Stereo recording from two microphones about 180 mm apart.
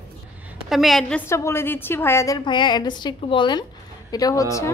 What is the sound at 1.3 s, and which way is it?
A woman's voice, 15° left (ahead or behind).